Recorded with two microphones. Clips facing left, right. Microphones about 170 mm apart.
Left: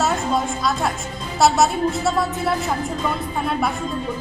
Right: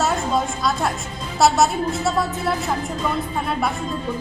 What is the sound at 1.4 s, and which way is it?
Speech, centre (ahead or behind).